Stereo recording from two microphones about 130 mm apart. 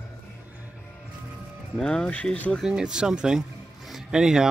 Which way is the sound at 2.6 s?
5° right (ahead or behind).